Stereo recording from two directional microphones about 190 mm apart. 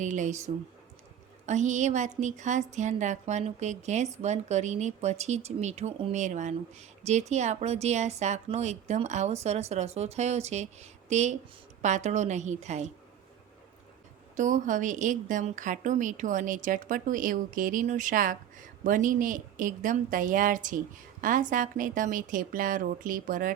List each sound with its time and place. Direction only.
0.0 s speech: 40° right (ahead or behind)
14.3 s a woman's voice: 40° right (ahead or behind)